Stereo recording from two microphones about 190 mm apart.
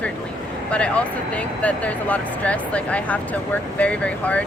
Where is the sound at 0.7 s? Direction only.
5° left (ahead or behind).